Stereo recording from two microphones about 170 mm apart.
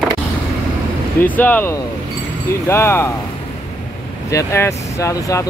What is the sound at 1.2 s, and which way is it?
Speech, 10° left (ahead or behind).